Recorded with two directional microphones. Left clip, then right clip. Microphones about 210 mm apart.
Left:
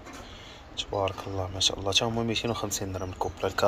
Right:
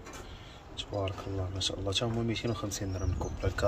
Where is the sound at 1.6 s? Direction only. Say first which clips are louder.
Left 7 dB; 5° right (ahead or behind).